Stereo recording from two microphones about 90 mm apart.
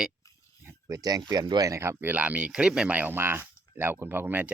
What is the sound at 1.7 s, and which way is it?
Speech, 25° right (ahead or behind).